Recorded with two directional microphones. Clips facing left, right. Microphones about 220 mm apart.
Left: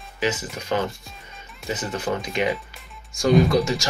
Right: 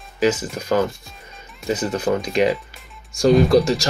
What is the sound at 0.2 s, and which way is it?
Speech, 45° right (ahead or behind).